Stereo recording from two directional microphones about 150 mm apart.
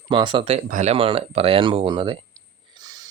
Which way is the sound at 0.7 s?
55° right (ahead or behind).